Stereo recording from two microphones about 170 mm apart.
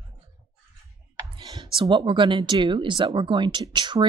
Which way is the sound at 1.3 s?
30° right (ahead or behind).